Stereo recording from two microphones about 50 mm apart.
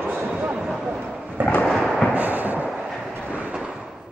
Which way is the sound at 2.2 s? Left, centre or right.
Right.